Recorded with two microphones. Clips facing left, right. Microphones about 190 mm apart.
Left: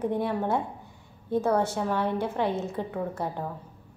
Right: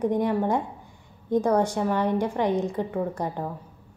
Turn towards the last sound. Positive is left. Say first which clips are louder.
# right 3 dB
turn(degrees=-15)  # may be behind; listen again after turning